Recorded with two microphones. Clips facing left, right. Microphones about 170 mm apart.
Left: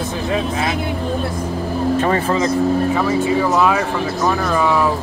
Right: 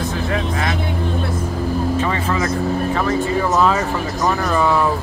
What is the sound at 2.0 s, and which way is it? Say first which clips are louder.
Vehicle: left 4 dB; 45° left (ahead or behind).